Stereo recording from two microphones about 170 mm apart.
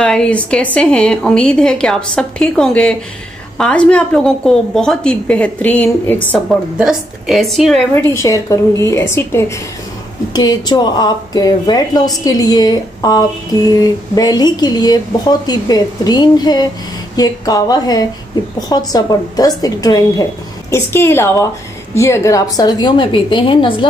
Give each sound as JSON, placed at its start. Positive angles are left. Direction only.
{"t": 0.0, "sound": "a woman's voice", "side_deg": 5}
{"t": 6.3, "sound": "a woman's voice", "side_deg": 0}
{"t": 7.9, "sound": "a woman's voice", "side_deg": 15}
{"t": 10.3, "sound": "a woman's voice", "side_deg": 25}